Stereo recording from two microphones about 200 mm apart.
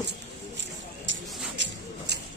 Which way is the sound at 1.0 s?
65° right (ahead or behind).